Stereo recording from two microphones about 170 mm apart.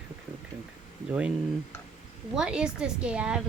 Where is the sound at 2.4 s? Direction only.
5° right (ahead or behind).